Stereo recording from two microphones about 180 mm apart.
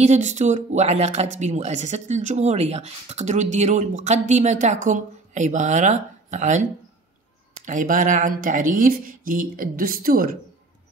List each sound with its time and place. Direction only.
0.0 s speech: 40° right (ahead or behind)